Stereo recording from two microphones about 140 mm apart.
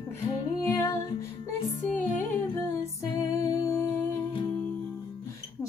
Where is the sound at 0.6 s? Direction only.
25° left (ahead or behind).